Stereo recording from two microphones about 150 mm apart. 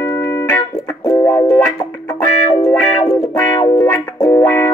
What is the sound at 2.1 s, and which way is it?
Music, 20° left (ahead or behind).